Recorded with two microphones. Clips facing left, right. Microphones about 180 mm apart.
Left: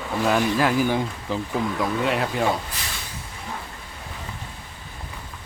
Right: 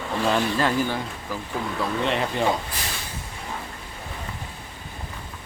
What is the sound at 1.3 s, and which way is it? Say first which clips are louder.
Speech: left 5 dB; 20° left (ahead or behind).